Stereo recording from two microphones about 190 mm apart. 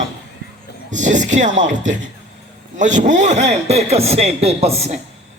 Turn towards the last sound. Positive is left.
turn(degrees=-35)  # may be behind; listen again after turning